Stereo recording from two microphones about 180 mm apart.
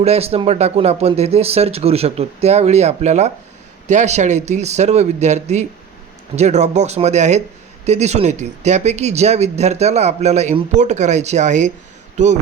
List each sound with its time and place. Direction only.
0.0 s speech: 35° right (ahead or behind)